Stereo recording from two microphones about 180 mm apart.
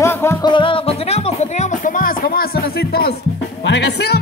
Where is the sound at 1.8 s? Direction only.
50° left (ahead or behind).